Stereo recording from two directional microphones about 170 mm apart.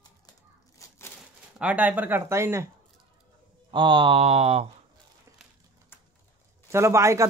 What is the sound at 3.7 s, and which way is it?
Speech, 30° right (ahead or behind).